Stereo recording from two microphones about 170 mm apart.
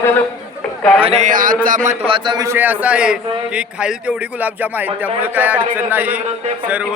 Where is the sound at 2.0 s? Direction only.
30° right (ahead or behind).